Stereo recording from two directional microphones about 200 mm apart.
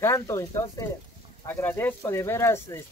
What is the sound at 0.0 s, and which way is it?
Speech, 15° left (ahead or behind).